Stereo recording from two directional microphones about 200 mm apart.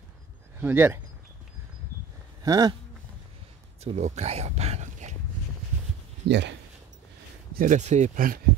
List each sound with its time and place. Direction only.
0.6 s speech: 10° right (ahead or behind)
2.4 s speech: 20° right (ahead or behind)
3.8 s speech: 35° right (ahead or behind)
6.2 s speech: 60° right (ahead or behind)
7.5 s speech: 40° right (ahead or behind)